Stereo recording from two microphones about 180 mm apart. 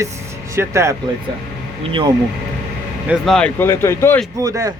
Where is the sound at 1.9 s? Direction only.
25° right (ahead or behind).